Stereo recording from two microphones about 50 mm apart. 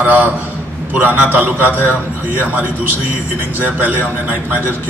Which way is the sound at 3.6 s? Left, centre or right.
Right.